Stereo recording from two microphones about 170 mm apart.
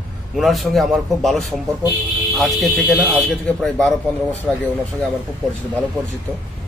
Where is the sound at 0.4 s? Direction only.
Centre (ahead or behind).